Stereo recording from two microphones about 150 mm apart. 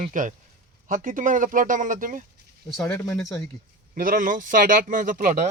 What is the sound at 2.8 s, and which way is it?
Speech, 15° left (ahead or behind).